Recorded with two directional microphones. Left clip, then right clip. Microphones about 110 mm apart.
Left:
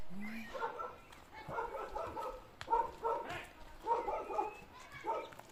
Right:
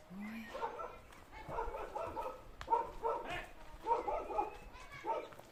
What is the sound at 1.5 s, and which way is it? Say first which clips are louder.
Bow-wow: left 1 dB; 15° right (ahead or behind).